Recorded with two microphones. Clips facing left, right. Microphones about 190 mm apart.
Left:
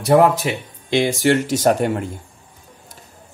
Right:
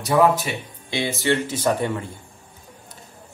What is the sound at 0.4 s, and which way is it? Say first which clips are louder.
Speech: left 5 dB; 90° left.